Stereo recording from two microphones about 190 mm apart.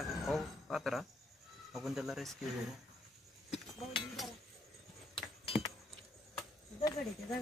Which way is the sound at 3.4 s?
35° left (ahead or behind).